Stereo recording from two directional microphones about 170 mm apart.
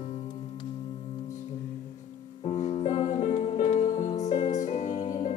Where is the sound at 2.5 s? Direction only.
40° left (ahead or behind).